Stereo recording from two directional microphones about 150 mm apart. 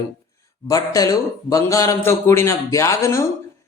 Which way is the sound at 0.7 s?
25° left (ahead or behind).